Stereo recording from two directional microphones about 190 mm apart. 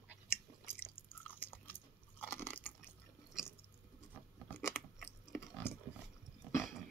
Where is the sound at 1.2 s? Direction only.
10° left (ahead or behind).